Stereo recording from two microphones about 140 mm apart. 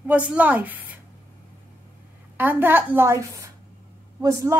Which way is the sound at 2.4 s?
15° right (ahead or behind).